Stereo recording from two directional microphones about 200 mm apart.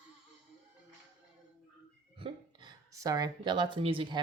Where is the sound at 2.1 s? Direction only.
25° right (ahead or behind).